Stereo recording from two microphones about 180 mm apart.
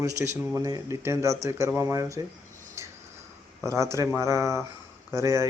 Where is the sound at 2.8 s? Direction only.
15° right (ahead or behind).